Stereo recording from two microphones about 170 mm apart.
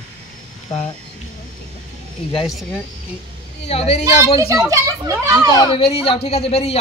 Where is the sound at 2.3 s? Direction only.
Centre (ahead or behind).